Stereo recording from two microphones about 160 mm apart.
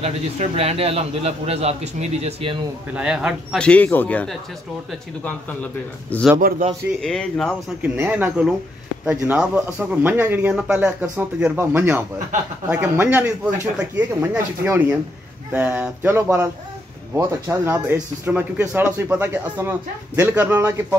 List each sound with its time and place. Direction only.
0.0 s a man's voice: 40° right (ahead or behind)
2.9 s speech: 5° right (ahead or behind)
3.5 s a man's voice: 5° left (ahead or behind)
7.8 s speech: 10° right (ahead or behind)